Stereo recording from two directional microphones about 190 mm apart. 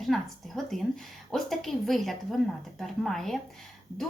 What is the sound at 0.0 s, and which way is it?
Speech, centre (ahead or behind).